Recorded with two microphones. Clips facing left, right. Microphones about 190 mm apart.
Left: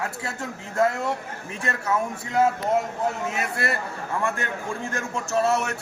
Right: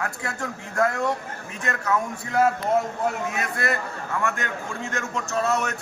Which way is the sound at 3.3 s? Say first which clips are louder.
Even; 30° left (ahead or behind).